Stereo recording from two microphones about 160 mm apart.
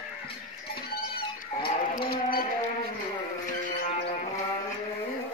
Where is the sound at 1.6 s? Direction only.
65° left (ahead or behind).